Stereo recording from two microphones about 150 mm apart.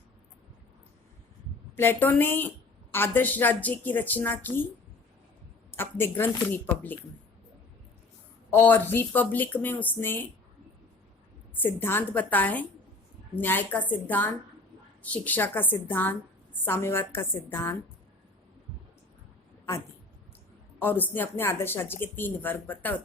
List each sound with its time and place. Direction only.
1.7 s speech: 15° left (ahead or behind)
5.7 s speech: 15° left (ahead or behind)
8.4 s speech: 15° left (ahead or behind)
11.5 s speech: 15° left (ahead or behind)
20.7 s speech: 15° left (ahead or behind)